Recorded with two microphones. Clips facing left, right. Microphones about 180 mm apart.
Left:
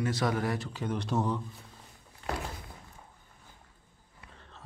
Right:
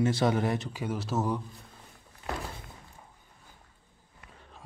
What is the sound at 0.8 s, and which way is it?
Speech, 5° right (ahead or behind).